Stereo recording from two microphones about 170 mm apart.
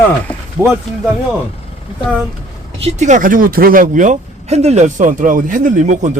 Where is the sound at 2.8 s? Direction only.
45° right (ahead or behind).